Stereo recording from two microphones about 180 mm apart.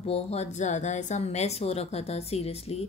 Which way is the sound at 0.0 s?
35° left (ahead or behind).